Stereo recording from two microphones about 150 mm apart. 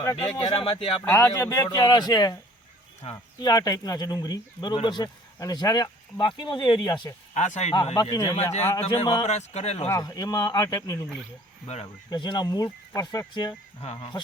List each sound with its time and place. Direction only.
0.3 s speech: 35° left (ahead or behind)
1.0 s speech: 20° left (ahead or behind)
3.0 s speech: 40° left (ahead or behind)
3.4 s speech: 25° left (ahead or behind)
7.3 s speech: 50° left (ahead or behind)
7.7 s speech: 35° left (ahead or behind)
8.1 s speech: 25° left (ahead or behind)
9.2 s speech: 45° left (ahead or behind)
9.9 s speech: 20° left (ahead or behind)
12.1 s speech: 30° left (ahead or behind)
13.8 s speech: 45° left (ahead or behind)